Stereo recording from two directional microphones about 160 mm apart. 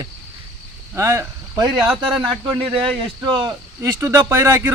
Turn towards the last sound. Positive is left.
turn(degrees=-15)  # may be behind; listen again after turning